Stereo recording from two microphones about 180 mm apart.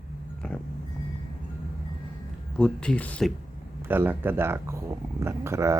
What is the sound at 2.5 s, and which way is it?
Speech, 5° left (ahead or behind).